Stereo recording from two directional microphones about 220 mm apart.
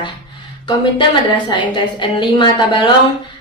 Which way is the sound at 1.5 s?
20° left (ahead or behind).